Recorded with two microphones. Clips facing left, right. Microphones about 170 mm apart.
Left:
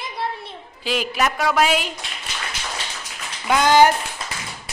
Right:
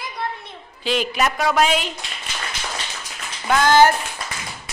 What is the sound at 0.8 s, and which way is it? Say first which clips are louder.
A woman's voice: right 1 dB; 5° left (ahead or behind).